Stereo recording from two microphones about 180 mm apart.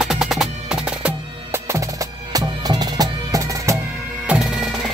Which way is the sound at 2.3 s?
20° right (ahead or behind).